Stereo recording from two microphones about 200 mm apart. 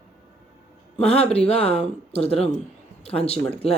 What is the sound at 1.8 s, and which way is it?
Speech, 30° left (ahead or behind).